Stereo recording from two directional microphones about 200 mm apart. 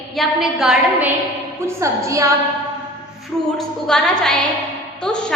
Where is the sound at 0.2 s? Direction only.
Centre (ahead or behind).